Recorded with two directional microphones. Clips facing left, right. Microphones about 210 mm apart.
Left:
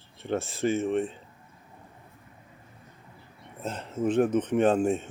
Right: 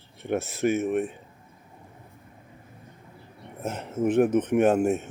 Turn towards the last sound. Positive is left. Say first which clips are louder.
# right 2 dB
turn(degrees=-10)  # may be behind; listen again after turning